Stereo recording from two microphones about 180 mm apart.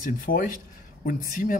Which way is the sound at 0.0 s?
50° left (ahead or behind).